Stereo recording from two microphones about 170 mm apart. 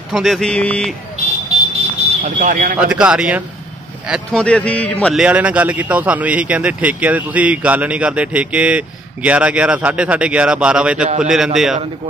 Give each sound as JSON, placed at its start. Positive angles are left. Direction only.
{"t": 0.1, "sound": "speech", "side_deg": 0}
{"t": 2.2, "sound": "speech", "side_deg": -50}
{"t": 2.8, "sound": "speech", "side_deg": -5}
{"t": 4.1, "sound": "a man's voice", "side_deg": 5}
{"t": 5.0, "sound": "speech", "side_deg": -5}